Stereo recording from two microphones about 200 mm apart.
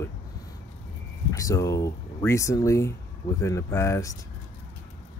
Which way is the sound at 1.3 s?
15° left (ahead or behind).